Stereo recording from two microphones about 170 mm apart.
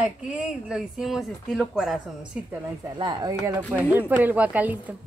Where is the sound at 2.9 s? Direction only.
25° right (ahead or behind).